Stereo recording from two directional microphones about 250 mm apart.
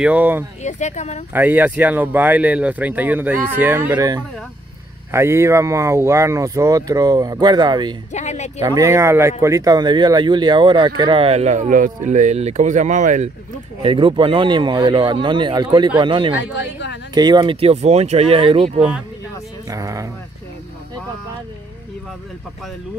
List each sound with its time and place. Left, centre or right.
0.0 s speech: centre
0.6 s speech: left
1.3 s speech: centre
8.1 s speech: left
8.5 s speech: centre
16.5 s speech: left
17.1 s speech: centre